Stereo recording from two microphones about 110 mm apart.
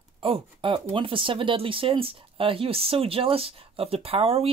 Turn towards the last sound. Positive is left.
turn(degrees=-65)  # may be behind; listen again after turning